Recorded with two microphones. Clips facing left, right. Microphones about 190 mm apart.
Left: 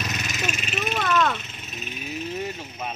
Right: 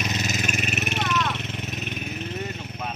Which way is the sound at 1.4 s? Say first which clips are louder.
Right 6 dB; 70° right (ahead or behind).